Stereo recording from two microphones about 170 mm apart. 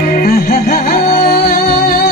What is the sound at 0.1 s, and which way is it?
Music, 55° left (ahead or behind).